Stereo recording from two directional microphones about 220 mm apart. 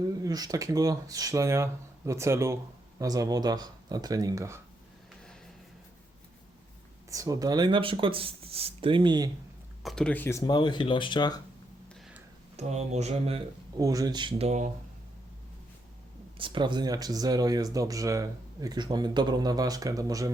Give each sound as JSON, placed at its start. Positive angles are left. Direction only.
{"t": 0.2, "sound": "speech", "side_deg": -15}
{"t": 7.1, "sound": "speech", "side_deg": -15}
{"t": 9.8, "sound": "speech", "side_deg": 5}
{"t": 12.5, "sound": "speech", "side_deg": -30}
{"t": 16.4, "sound": "speech", "side_deg": -20}